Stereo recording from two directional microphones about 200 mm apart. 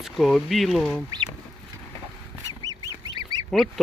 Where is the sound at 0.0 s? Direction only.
Centre (ahead or behind).